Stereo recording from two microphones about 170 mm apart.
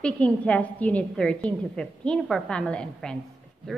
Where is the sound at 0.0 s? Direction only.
5° left (ahead or behind).